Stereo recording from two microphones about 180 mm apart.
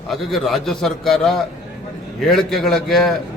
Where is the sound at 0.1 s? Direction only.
Centre (ahead or behind).